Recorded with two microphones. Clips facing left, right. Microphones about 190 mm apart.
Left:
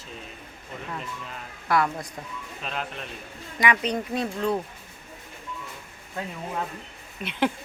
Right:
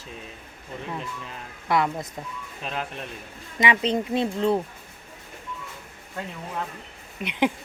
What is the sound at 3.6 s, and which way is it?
A woman's voice, 25° right (ahead or behind).